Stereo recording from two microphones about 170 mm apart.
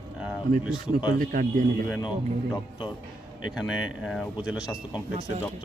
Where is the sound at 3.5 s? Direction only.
5° right (ahead or behind).